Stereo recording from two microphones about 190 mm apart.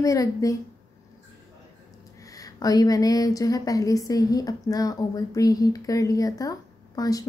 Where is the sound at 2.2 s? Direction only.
20° left (ahead or behind).